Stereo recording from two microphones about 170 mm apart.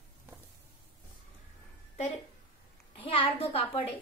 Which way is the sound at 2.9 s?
35° left (ahead or behind).